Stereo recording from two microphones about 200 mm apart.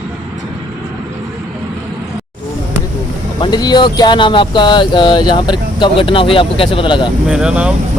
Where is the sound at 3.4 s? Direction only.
20° left (ahead or behind).